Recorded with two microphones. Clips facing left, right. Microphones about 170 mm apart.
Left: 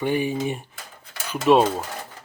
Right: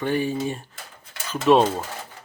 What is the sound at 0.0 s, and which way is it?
Speech, 15° left (ahead or behind).